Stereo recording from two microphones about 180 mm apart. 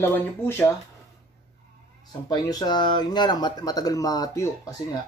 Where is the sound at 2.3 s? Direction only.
20° left (ahead or behind).